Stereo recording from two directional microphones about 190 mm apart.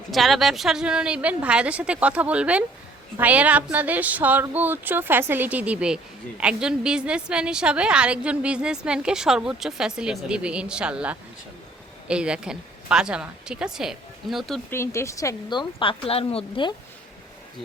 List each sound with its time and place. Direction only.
0.1 s a woman's voice: centre (ahead or behind)
14.7 s speech: 15° left (ahead or behind)